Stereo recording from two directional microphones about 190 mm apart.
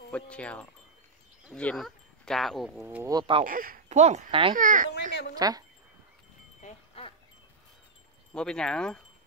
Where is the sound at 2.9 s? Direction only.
15° right (ahead or behind).